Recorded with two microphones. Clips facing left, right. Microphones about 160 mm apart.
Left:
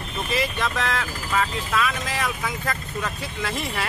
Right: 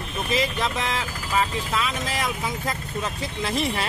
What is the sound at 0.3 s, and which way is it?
Speech, 15° right (ahead or behind).